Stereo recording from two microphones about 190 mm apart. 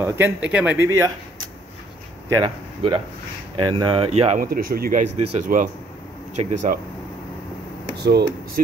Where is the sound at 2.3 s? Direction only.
25° right (ahead or behind).